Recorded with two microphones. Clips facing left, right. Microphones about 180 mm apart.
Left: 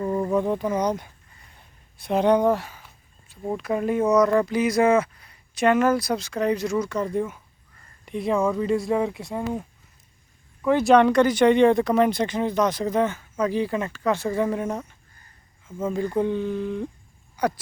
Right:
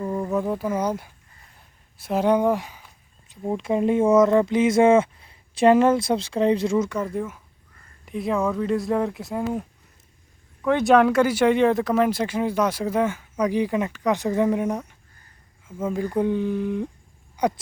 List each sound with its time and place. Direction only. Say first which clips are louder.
0.0 s speech: left 2 dB; 5° left (ahead or behind)
1.5 s a sound: left 1 dB; 5° right (ahead or behind)
3.6 s speech: right 3 dB; 25° right (ahead or behind)
6.9 s speech: left 2 dB; 5° right (ahead or behind); by 17.5 s 20° right (ahead or behind)